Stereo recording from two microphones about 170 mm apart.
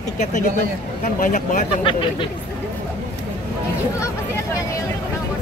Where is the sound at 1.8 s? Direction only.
30° left (ahead or behind).